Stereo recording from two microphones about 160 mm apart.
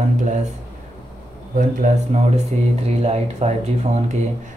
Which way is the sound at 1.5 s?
55° right (ahead or behind).